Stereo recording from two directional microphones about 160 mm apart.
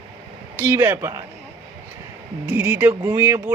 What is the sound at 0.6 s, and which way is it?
Speech, 15° right (ahead or behind).